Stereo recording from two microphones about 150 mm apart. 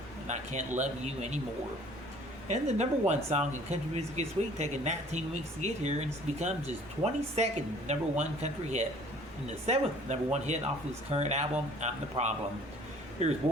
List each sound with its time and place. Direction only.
0.8 s speech: 50° right (ahead or behind)
2.5 s speech: 50° right (ahead or behind)